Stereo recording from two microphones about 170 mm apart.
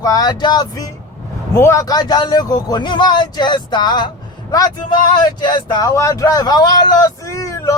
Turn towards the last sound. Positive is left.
turn(degrees=20)  # may be behind; listen again after turning